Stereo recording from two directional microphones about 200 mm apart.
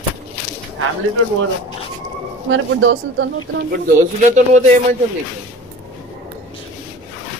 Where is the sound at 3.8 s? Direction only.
40° right (ahead or behind).